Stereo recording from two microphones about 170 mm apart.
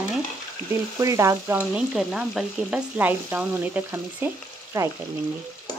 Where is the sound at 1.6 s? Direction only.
5° right (ahead or behind).